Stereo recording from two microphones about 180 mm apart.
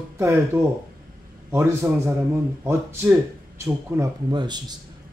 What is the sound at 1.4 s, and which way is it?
Speech, 15° right (ahead or behind).